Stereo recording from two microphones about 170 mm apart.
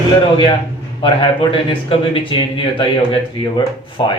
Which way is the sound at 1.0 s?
30° left (ahead or behind).